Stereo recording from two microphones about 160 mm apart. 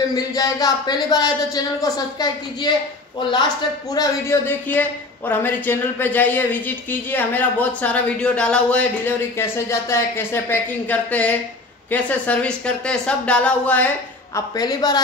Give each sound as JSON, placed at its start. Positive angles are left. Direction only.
{"t": 0.1, "sound": "speech", "side_deg": 25}
{"t": 4.5, "sound": "speech", "side_deg": 10}
{"t": 14.3, "sound": "speech", "side_deg": 25}